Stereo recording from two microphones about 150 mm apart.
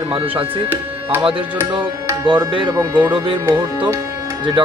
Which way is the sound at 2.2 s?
30° right (ahead or behind).